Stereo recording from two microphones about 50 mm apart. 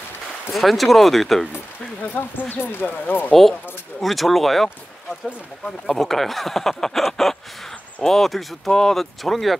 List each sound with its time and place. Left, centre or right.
0.5 s speech: centre
2.0 s speech: left
4.0 s speech: centre
5.9 s speech: centre